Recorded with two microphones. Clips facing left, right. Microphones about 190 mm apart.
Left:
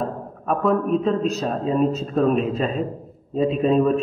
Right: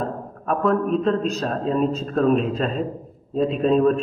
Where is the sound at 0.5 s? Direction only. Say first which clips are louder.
Even; centre (ahead or behind).